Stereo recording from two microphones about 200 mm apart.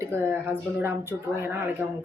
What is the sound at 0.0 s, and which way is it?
A woman's voice, 10° right (ahead or behind).